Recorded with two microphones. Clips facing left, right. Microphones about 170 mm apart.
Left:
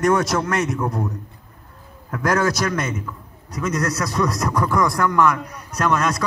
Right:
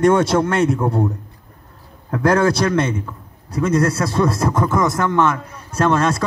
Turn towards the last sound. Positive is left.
turn(degrees=-30)  # may be behind; listen again after turning